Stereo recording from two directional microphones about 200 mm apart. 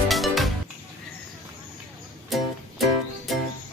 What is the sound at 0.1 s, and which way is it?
Music, centre (ahead or behind).